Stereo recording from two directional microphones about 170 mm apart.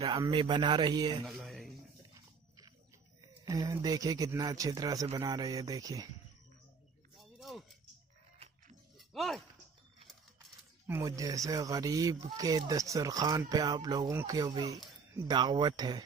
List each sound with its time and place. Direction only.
0.3 s speech: 30° right (ahead or behind)
1.2 s speech: centre (ahead or behind)
3.2 s speech: 20° right (ahead or behind)
7.2 s a sound: centre (ahead or behind)
8.9 s shatter: centre (ahead or behind)
10.9 s speech: 20° right (ahead or behind)